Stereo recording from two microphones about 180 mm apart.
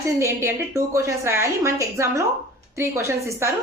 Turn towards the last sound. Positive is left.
turn(degrees=-15)  # may be behind; listen again after turning